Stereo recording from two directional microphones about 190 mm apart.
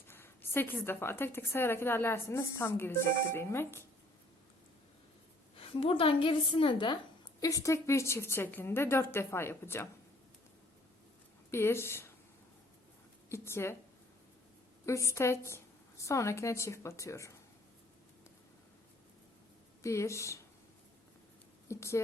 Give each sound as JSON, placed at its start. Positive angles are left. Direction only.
{"t": 0.1, "sound": "a sound", "side_deg": 10}
{"t": 0.9, "sound": "a woman's voice", "side_deg": 10}
{"t": 5.5, "sound": "a woman's voice", "side_deg": 30}
{"t": 11.5, "sound": "a woman's voice", "side_deg": 15}
{"t": 13.3, "sound": "a woman's voice", "side_deg": 15}
{"t": 14.8, "sound": "a woman's voice", "side_deg": 15}
{"t": 19.8, "sound": "a woman's voice", "side_deg": 15}
{"t": 21.7, "sound": "a woman's voice", "side_deg": 15}